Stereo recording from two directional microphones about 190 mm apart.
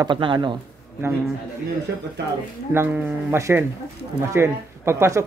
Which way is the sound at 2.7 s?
10° right (ahead or behind).